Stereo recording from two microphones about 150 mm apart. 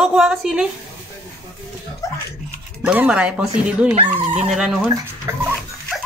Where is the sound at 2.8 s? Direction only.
10° right (ahead or behind).